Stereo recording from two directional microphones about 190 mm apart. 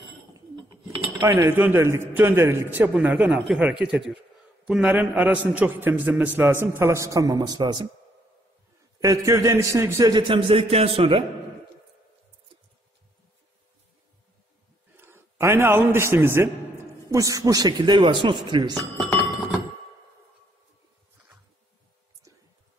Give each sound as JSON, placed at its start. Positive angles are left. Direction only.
{"t": 0.3, "sound": "a sound", "side_deg": -25}
{"t": 1.2, "sound": "a man's voice", "side_deg": -10}
{"t": 9.0, "sound": "a man's voice", "side_deg": -15}
{"t": 15.0, "sound": "a man's voice", "side_deg": -10}